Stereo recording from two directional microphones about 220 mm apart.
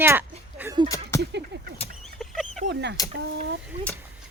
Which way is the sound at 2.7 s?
50° right (ahead or behind).